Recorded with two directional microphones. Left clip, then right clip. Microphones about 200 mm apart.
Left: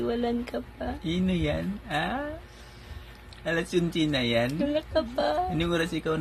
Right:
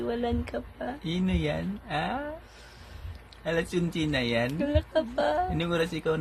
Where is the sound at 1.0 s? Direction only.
15° right (ahead or behind).